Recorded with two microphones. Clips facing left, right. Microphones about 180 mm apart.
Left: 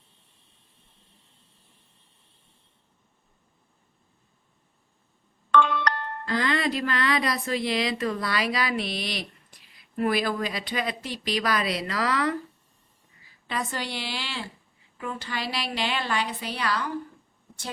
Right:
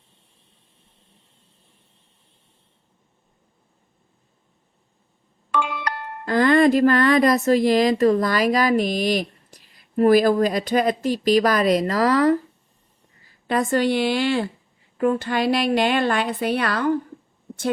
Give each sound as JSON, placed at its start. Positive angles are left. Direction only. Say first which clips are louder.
{"t": 5.5, "sound": "music", "louder": "left 3 dB", "side_deg": -10}
{"t": 6.2, "sound": "speech", "louder": "right 11 dB", "side_deg": -50}
{"t": 13.5, "sound": "speech", "louder": "right 12 dB", "side_deg": -50}